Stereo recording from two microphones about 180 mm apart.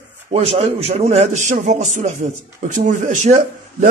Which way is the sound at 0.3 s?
35° right (ahead or behind).